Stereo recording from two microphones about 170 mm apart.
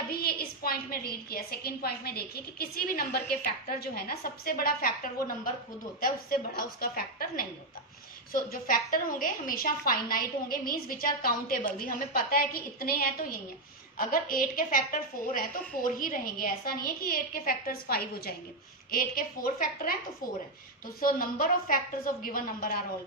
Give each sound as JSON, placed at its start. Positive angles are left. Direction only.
{"t": 0.1, "sound": "a woman's voice", "side_deg": 65}
{"t": 6.0, "sound": "a woman's voice", "side_deg": 60}
{"t": 21.0, "sound": "a woman's voice", "side_deg": 55}